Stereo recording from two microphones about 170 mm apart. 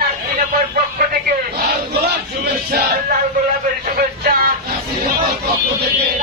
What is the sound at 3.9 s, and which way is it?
Music, 60° right (ahead or behind).